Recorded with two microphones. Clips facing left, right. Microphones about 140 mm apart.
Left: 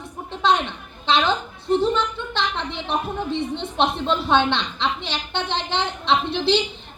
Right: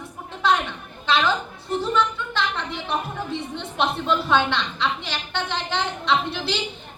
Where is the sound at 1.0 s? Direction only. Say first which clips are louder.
Left 1 dB; 25° left (ahead or behind).